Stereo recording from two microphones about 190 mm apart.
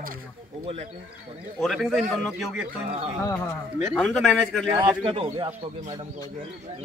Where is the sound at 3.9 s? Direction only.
5° left (ahead or behind).